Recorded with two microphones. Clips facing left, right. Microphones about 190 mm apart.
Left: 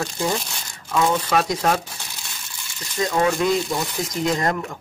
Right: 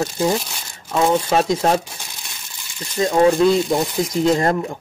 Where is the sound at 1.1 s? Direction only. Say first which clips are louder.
Right 4 dB; 25° right (ahead or behind).